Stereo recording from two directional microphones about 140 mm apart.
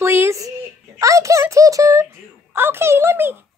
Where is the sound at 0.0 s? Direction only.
15° right (ahead or behind).